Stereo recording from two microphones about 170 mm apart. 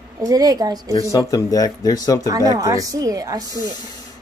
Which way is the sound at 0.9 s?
20° left (ahead or behind).